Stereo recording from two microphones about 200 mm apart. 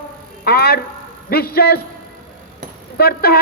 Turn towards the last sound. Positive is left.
turn(degrees=50)  # may be behind; listen again after turning